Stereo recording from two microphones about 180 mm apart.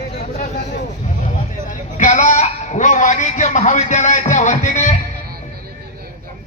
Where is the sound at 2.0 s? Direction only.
40° left (ahead or behind).